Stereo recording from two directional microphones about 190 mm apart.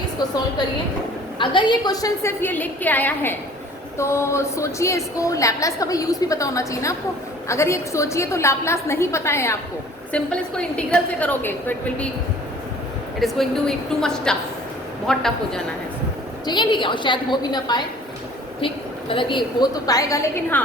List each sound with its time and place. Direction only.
1.4 s a woman's voice: 25° left (ahead or behind); by 12.0 s 10° left (ahead or behind)
13.1 s a woman's voice: centre (ahead or behind)
16.5 s a woman's voice: 25° left (ahead or behind)